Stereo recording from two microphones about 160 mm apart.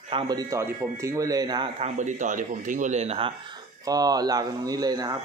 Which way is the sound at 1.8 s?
50° right (ahead or behind).